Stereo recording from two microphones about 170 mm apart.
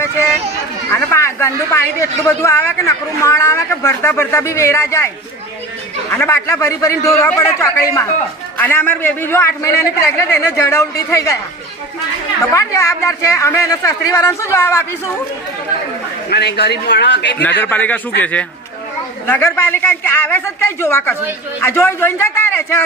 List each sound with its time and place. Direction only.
0.9 s speech: 15° left (ahead or behind)
12.5 s speech: 15° left (ahead or behind)
16.3 s a man's voice: 75° left (ahead or behind)
17.6 s speech: 10° left (ahead or behind)